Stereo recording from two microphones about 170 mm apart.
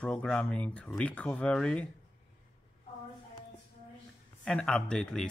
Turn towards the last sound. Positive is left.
turn(degrees=5)  # may be behind; listen again after turning